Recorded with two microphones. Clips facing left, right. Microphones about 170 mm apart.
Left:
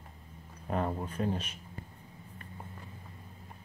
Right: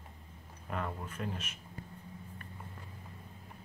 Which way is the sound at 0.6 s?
35° left (ahead or behind).